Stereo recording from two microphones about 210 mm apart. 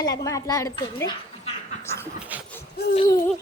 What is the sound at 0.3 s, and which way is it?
Speech, 15° left (ahead or behind).